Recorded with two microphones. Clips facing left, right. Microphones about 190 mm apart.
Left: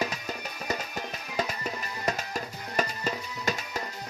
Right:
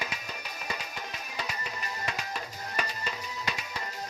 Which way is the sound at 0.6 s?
45° left (ahead or behind).